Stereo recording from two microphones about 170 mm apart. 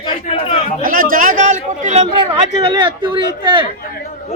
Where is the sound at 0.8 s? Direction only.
55° right (ahead or behind).